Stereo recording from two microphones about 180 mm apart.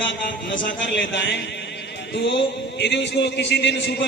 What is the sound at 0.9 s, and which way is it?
A man's voice, 70° left (ahead or behind).